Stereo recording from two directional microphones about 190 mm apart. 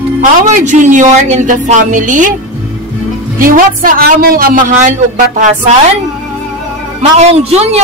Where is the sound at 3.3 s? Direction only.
45° right (ahead or behind).